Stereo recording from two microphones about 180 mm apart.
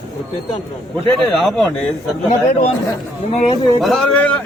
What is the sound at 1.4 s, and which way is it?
Speech, centre (ahead or behind).